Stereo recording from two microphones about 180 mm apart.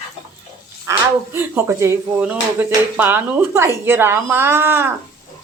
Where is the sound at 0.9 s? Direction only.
15° right (ahead or behind).